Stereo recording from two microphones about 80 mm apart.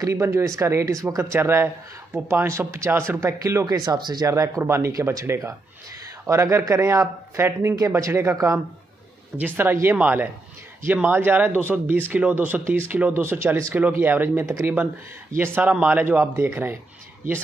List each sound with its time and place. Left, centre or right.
0.0 s speech: right
4.3 s speech: right
9.6 s speech: right
13.7 s speech: right
14.4 s speech: right
15.3 s speech: right